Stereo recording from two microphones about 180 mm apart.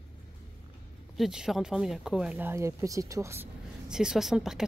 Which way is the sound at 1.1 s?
5° right (ahead or behind).